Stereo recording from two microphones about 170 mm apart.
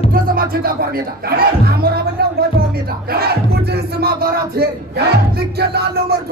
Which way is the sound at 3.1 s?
65° right (ahead or behind).